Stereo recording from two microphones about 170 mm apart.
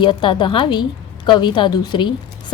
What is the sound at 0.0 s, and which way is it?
A woman's voice, 30° left (ahead or behind).